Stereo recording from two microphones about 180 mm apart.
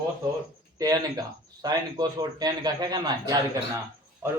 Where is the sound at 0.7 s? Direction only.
20° right (ahead or behind).